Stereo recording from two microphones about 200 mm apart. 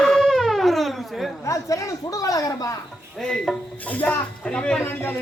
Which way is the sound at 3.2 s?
5° left (ahead or behind).